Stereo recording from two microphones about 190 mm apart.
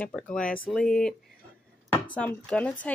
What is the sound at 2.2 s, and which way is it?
Speech, 5° left (ahead or behind).